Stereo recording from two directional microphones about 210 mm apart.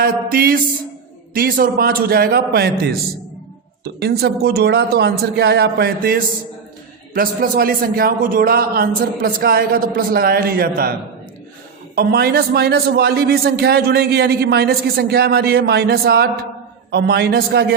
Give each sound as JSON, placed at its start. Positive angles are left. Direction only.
{"t": 0.0, "sound": "a man's voice", "side_deg": -45}
{"t": 11.9, "sound": "a man's voice", "side_deg": -50}